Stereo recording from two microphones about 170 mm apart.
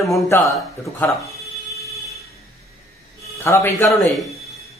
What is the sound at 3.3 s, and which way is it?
Speech, 15° left (ahead or behind).